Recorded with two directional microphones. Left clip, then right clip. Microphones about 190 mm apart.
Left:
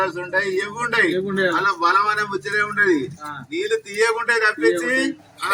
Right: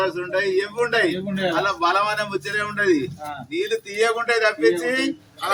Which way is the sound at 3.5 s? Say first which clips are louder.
Left 2 dB; 10° right (ahead or behind).